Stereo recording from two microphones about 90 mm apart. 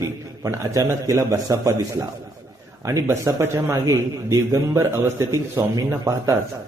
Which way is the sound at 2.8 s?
35° right (ahead or behind).